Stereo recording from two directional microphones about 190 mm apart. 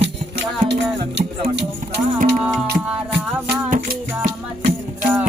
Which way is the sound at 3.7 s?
45° right (ahead or behind).